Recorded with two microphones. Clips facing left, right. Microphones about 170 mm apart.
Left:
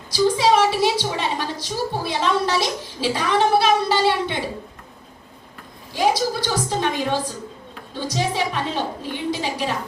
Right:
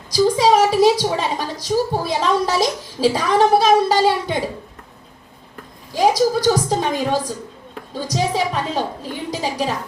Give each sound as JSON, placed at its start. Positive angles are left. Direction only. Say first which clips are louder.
{"t": 0.1, "sound": "a woman's voice", "louder": "right 3 dB", "side_deg": -40}
{"t": 6.0, "sound": "a woman's voice", "louder": "right 5 dB", "side_deg": -40}